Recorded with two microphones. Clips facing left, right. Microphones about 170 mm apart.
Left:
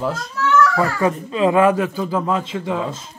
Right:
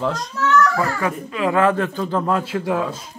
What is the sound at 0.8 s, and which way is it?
Speech, 25° left (ahead or behind).